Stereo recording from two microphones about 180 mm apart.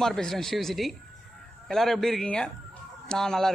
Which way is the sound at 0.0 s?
5° left (ahead or behind).